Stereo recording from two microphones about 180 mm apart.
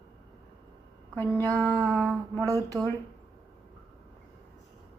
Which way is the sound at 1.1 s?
10° left (ahead or behind).